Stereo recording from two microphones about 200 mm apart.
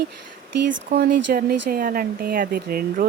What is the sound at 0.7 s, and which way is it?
Speech, 50° right (ahead or behind).